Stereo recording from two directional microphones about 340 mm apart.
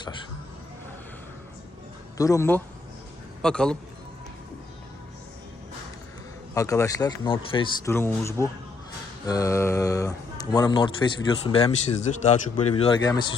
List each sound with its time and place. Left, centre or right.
2.1 s a man's voice: centre
6.5 s speech: centre